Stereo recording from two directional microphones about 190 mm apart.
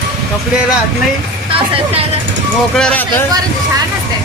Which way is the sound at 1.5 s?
30° right (ahead or behind).